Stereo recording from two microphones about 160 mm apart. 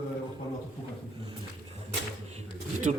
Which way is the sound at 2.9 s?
45° right (ahead or behind).